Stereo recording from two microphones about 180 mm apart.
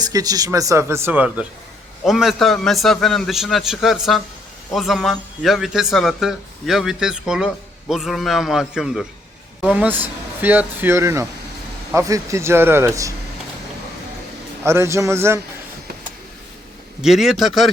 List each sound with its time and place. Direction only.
0.0 s a man's voice: 20° right (ahead or behind)
14.6 s speech: 15° right (ahead or behind)
17.0 s a man's voice: centre (ahead or behind)